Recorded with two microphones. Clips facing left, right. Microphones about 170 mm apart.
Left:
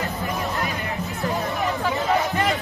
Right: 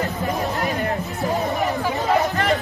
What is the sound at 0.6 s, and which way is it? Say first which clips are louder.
Music: right 5 dB; 45° right (ahead or behind).